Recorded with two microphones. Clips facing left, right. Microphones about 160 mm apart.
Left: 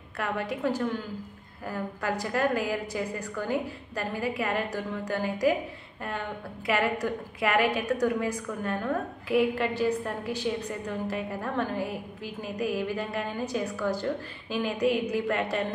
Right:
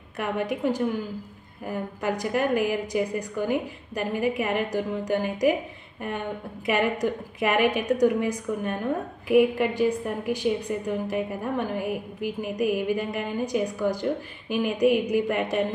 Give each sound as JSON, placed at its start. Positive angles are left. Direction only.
{"t": 0.2, "sound": "a woman's voice", "side_deg": -15}